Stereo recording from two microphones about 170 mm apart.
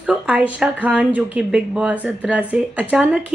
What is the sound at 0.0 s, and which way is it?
Speech, 5° right (ahead or behind).